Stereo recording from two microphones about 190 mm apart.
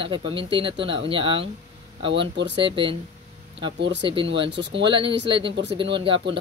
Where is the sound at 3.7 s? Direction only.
65° right (ahead or behind).